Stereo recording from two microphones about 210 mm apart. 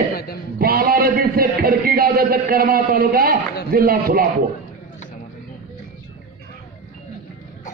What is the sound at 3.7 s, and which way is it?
Speech, 45° right (ahead or behind).